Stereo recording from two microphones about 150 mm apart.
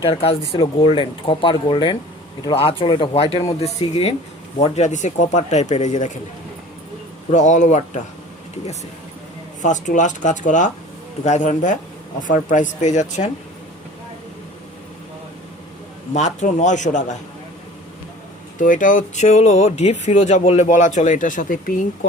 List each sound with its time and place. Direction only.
0.0 s speech: 40° left (ahead or behind)
4.5 s speech: 50° left (ahead or behind)
7.3 s speech: 55° left (ahead or behind)
9.6 s speech: 55° left (ahead or behind)
16.1 s speech: 50° left (ahead or behind)
18.6 s speech: 60° left (ahead or behind)